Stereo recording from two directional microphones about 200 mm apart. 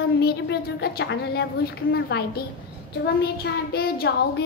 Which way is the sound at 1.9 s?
55° left (ahead or behind).